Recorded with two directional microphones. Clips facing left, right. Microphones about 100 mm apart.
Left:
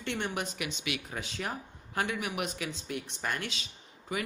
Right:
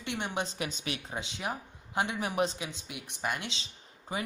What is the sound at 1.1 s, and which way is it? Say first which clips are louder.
Speech: right 1 dB; 20° right (ahead or behind).